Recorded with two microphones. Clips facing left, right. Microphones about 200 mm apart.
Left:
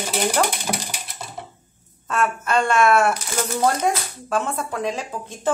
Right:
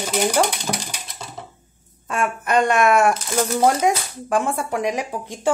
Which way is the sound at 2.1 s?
15° right (ahead or behind).